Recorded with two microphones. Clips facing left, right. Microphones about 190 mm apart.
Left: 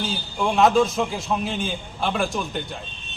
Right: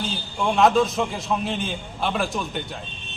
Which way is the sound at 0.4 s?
Centre (ahead or behind).